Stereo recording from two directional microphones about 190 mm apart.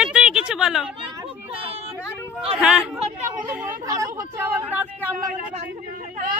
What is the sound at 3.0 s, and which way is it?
Chatter, 35° right (ahead or behind).